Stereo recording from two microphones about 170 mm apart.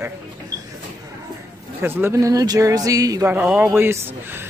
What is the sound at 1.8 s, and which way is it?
Speech, 15° right (ahead or behind).